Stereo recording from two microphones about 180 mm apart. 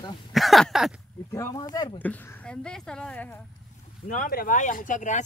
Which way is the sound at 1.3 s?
15° left (ahead or behind).